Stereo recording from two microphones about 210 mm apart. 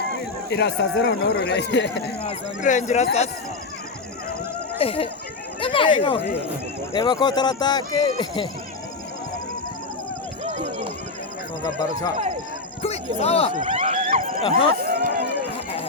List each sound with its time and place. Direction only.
0.5 s speech: 55° left (ahead or behind)
2.6 s speech: 35° left (ahead or behind)
4.8 s speech: 25° left (ahead or behind)
5.5 s a sound: 25° left (ahead or behind)
6.9 s speech: 20° left (ahead or behind)
10.4 s run: 30° right (ahead or behind)
12.8 s speech: 30° left (ahead or behind)
13.6 s a sound: 30° right (ahead or behind)
14.4 s speech: 25° left (ahead or behind)
14.8 s run: 45° right (ahead or behind)